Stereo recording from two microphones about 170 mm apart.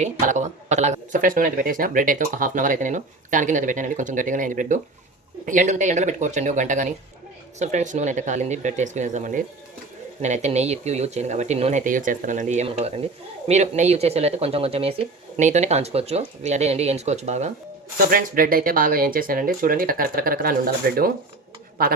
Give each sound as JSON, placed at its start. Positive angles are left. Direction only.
{"t": 0.0, "sound": "speech", "side_deg": -45}
{"t": 18.1, "sound": "speech", "side_deg": -55}